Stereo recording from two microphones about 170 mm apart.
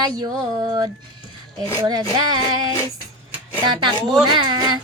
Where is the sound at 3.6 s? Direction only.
25° right (ahead or behind).